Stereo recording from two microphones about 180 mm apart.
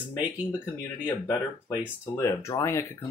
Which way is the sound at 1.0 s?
15° left (ahead or behind).